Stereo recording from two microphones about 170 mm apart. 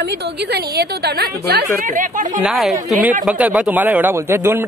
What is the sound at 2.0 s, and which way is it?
Speech, 50° right (ahead or behind).